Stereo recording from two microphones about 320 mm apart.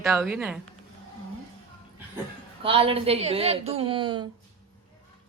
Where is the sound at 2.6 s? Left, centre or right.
Centre.